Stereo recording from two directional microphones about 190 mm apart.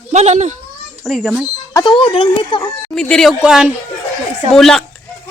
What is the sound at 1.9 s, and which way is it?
Speech, 30° left (ahead or behind).